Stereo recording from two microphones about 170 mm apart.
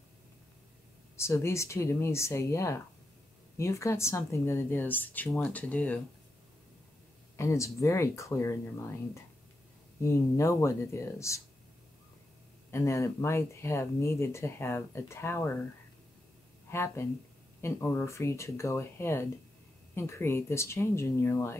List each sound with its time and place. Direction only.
1.1 s speech: 15° left (ahead or behind)
7.3 s speech: 15° left (ahead or behind)
12.7 s speech: 15° left (ahead or behind)
16.7 s speech: 15° left (ahead or behind)